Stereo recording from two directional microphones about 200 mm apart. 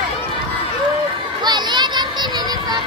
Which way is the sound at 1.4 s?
20° right (ahead or behind).